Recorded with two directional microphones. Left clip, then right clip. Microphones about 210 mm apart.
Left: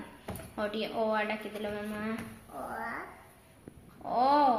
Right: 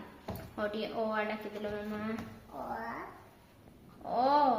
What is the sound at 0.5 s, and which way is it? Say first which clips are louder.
A woman's voice: left 2 dB; 15° left (ahead or behind).